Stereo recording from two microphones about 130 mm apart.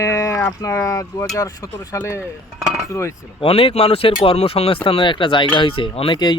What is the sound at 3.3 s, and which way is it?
Speech, 45° left (ahead or behind).